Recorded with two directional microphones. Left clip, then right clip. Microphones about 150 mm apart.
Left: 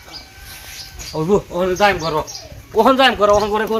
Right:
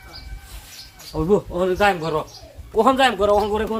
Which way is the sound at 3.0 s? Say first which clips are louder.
Left 4 dB; 20° right (ahead or behind).